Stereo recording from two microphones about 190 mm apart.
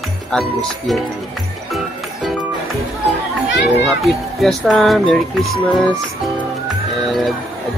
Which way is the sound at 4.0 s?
Centre (ahead or behind).